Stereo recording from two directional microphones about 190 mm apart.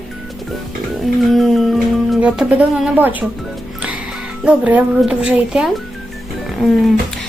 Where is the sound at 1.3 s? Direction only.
Centre (ahead or behind).